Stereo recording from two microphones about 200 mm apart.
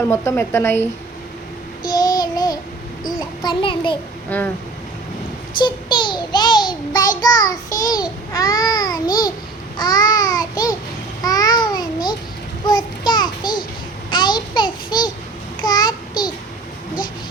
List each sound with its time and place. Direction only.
0.1 s a woman's voice: 15° left (ahead or behind)
1.9 s child singing: 20° left (ahead or behind)
4.3 s a woman's voice: 10° left (ahead or behind)
5.6 s child singing: 25° left (ahead or behind)
7.9 s a child's voice: 20° left (ahead or behind)
9.0 s a child's voice: 45° left (ahead or behind)
9.7 s babbling: 20° left (ahead or behind)
12.6 s a sound: 20° left (ahead or behind)